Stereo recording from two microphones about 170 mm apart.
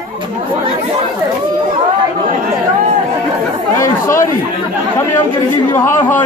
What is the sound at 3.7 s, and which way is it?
Chatter, 15° left (ahead or behind).